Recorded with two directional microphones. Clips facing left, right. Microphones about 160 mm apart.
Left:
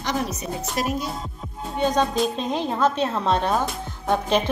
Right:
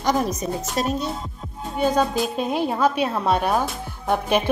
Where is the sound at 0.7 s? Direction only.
30° right (ahead or behind).